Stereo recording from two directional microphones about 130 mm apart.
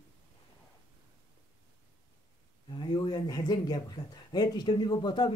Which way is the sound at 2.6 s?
35° left (ahead or behind).